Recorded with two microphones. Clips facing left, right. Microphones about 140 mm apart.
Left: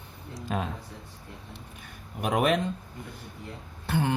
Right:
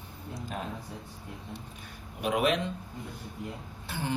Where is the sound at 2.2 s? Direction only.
45° left (ahead or behind).